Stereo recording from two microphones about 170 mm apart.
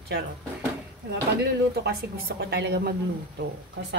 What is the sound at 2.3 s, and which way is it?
Speech, 85° right.